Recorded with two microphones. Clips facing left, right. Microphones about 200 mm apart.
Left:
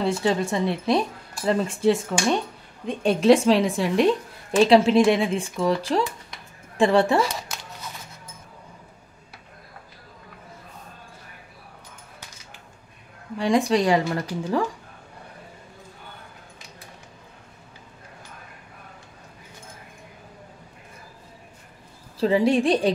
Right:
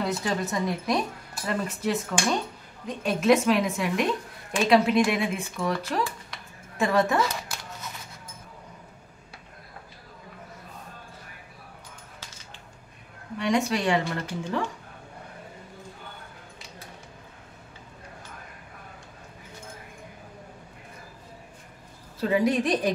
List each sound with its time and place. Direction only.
0.0 s a woman's voice: 25° left (ahead or behind)
13.4 s a woman's voice: 30° left (ahead or behind)
22.2 s speech: 30° left (ahead or behind)